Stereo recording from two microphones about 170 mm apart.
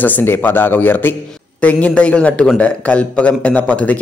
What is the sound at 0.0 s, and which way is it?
A man's voice, 10° left (ahead or behind).